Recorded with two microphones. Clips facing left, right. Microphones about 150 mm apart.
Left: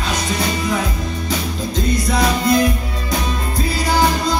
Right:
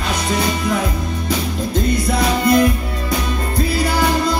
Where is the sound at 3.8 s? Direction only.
55° right (ahead or behind).